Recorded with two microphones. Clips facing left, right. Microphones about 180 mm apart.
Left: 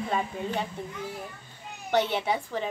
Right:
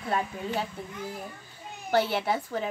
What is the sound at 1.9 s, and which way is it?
Speech, 5° right (ahead or behind).